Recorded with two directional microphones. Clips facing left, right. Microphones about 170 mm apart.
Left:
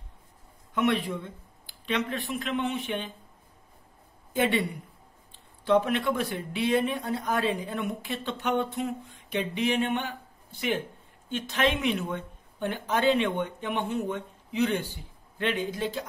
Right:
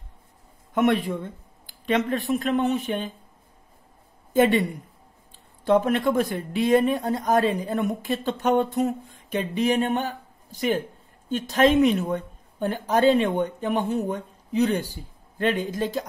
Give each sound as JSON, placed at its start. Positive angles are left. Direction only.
{"t": 0.7, "sound": "speech", "side_deg": -50}
{"t": 4.3, "sound": "speech", "side_deg": -45}
{"t": 8.7, "sound": "a sound", "side_deg": -40}
{"t": 11.2, "sound": "speech", "side_deg": -40}